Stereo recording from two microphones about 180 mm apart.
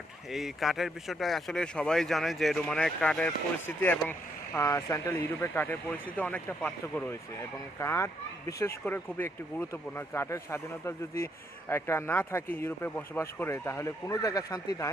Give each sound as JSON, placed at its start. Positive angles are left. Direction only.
{"t": 0.3, "sound": "speech", "side_deg": 0}